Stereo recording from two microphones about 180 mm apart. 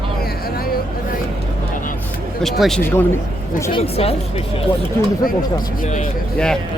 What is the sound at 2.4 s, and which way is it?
Speech, centre (ahead or behind).